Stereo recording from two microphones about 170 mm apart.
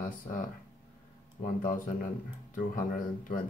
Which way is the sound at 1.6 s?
55° left (ahead or behind).